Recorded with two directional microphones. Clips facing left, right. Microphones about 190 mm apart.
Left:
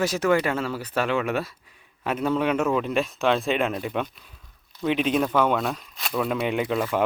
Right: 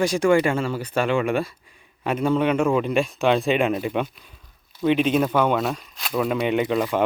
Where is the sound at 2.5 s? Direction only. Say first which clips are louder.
Right 3 dB; 10° right (ahead or behind).